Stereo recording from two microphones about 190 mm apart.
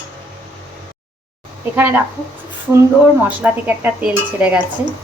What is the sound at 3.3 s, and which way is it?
Speech, 10° right (ahead or behind).